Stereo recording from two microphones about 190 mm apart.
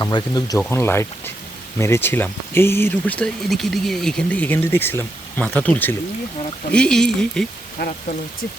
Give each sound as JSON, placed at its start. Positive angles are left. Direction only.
{"t": 0.0, "sound": "speech", "side_deg": 20}
{"t": 7.8, "sound": "speech", "side_deg": 55}